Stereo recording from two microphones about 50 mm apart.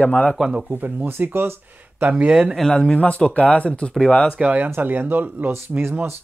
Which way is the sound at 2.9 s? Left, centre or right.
Left.